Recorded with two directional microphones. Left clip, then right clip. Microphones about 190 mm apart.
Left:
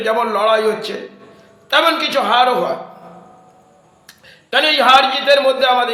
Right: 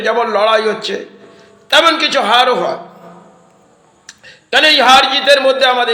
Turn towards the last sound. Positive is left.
turn(degrees=-15)  # may be behind; listen again after turning